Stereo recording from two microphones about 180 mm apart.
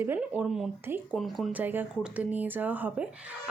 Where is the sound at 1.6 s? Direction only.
10° right (ahead or behind).